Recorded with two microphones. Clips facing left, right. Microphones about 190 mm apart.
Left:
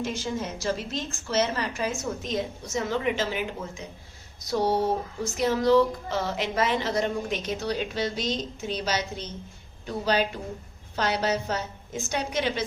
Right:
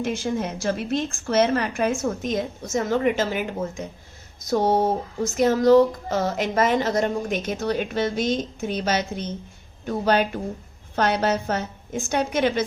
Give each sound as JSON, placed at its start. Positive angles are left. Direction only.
{"t": 0.0, "sound": "a woman's voice", "side_deg": -55}
{"t": 4.4, "sound": "music", "side_deg": -50}